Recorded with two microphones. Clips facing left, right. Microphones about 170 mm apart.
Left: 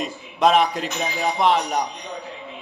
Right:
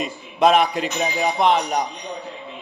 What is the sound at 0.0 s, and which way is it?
A man's voice, 5° right (ahead or behind).